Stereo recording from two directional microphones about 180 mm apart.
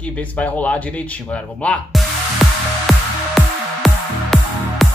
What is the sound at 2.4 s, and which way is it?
Music, centre (ahead or behind).